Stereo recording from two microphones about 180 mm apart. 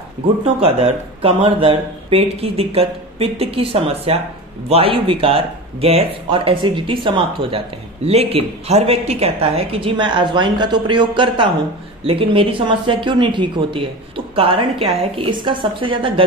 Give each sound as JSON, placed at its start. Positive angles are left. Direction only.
{"t": 0.6, "sound": "speech", "side_deg": -35}